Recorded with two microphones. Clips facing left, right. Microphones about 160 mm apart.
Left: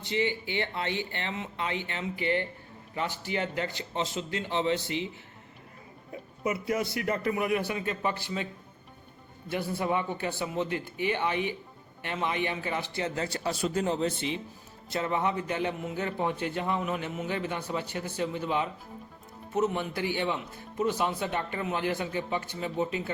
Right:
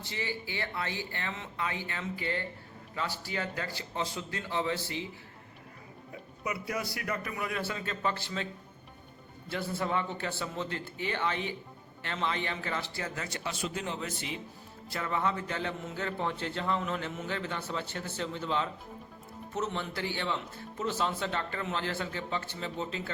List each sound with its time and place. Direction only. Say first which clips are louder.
0.0 s speech: left 8 dB; 20° left (ahead or behind)
6.4 s speech: left 6 dB; 25° left (ahead or behind)
9.5 s a man's voice: left 3 dB; 15° left (ahead or behind); by 14.1 s 35° left (ahead or behind)
14.8 s a man's voice: left 3 dB; 20° left (ahead or behind)